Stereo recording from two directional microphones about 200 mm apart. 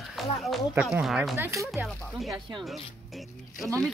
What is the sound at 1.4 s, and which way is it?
Speech, 15° right (ahead or behind).